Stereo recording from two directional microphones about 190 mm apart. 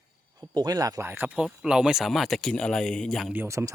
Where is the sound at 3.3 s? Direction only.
15° right (ahead or behind).